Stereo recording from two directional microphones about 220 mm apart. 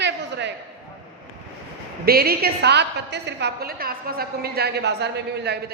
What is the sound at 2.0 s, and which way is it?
A woman's voice, 45° right (ahead or behind).